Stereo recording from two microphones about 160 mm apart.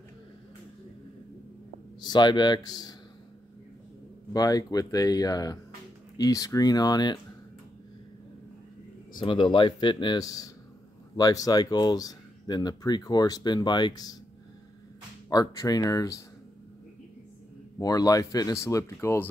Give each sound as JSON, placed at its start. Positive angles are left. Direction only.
{"t": 2.0, "sound": "speech", "side_deg": 25}
{"t": 4.3, "sound": "speech", "side_deg": 25}
{"t": 9.2, "sound": "speech", "side_deg": 30}
{"t": 15.2, "sound": "speech", "side_deg": 20}
{"t": 17.7, "sound": "speech", "side_deg": 25}